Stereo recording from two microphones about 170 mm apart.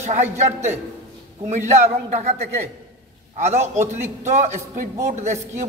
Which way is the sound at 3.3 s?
45° right (ahead or behind).